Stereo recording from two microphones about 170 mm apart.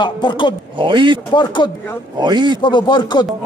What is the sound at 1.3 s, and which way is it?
Speech, 25° left (ahead or behind).